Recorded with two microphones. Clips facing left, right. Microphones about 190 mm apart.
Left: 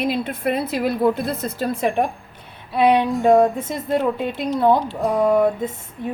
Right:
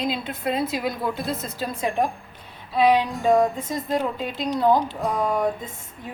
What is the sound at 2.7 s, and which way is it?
Speech, 60° left (ahead or behind).